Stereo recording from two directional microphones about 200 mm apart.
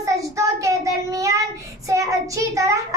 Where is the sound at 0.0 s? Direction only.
15° right (ahead or behind).